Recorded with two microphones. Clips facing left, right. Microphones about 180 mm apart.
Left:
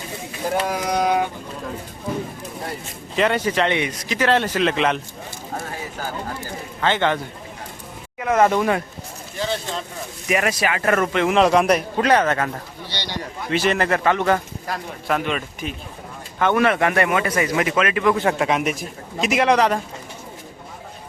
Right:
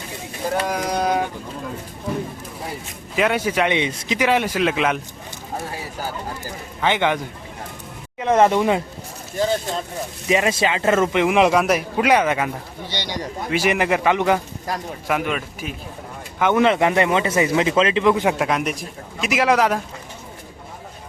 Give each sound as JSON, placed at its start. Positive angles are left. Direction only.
{"t": 0.6, "sound": "a man's voice", "side_deg": 0}
{"t": 3.2, "sound": "a man's voice", "side_deg": -10}
{"t": 3.8, "sound": "speech", "side_deg": -25}
{"t": 4.2, "sound": "a man's voice", "side_deg": -10}
{"t": 6.8, "sound": "a man's voice", "side_deg": -15}
{"t": 8.2, "sound": "speech", "side_deg": -25}
{"t": 10.2, "sound": "a man's voice", "side_deg": -25}
{"t": 16.4, "sound": "speech", "side_deg": -20}
{"t": 18.1, "sound": "a man's voice", "side_deg": -10}
{"t": 18.3, "sound": "a man's voice", "side_deg": 0}